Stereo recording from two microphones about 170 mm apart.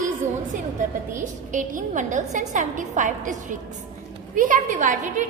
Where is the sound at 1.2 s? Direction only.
50° right (ahead or behind).